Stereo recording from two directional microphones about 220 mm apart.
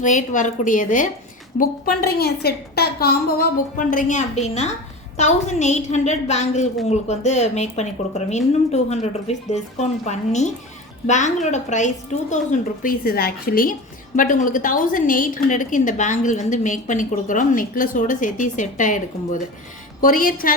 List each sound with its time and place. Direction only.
0.0 s a woman's voice: 35° left (ahead or behind)